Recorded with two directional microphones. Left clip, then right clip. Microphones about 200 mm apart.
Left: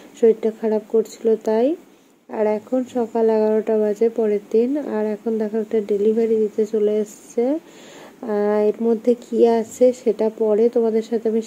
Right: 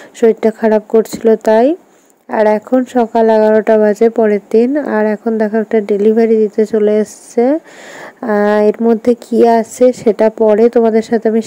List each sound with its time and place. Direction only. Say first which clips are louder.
0.2 s speech: right 6 dB; 35° right (ahead or behind)